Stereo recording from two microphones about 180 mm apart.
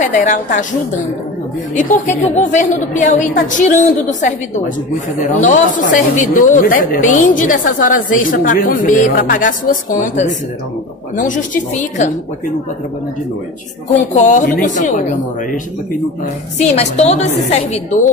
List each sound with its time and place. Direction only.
0.0 s a woman's voice: 45° left (ahead or behind)
1.8 s a woman's voice: 40° left (ahead or behind)
13.9 s a woman's voice: 40° left (ahead or behind)
16.5 s a woman's voice: 35° left (ahead or behind)